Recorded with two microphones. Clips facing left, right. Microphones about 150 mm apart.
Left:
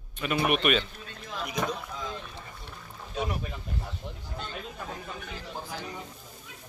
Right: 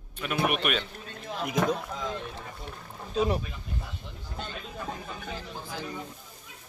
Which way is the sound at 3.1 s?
30° right (ahead or behind).